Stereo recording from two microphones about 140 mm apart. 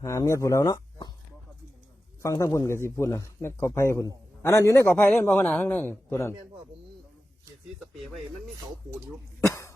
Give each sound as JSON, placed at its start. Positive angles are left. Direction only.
{"t": 0.0, "sound": "speech", "side_deg": 20}
{"t": 2.2, "sound": "a man's voice", "side_deg": 25}
{"t": 9.5, "sound": "cough", "side_deg": 20}